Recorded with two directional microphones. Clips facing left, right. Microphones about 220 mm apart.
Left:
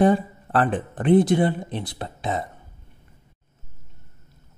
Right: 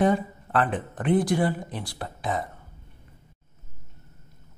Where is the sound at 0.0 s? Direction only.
35° left (ahead or behind).